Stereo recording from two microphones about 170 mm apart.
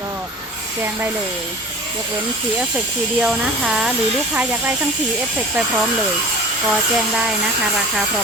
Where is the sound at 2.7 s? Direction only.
Centre (ahead or behind).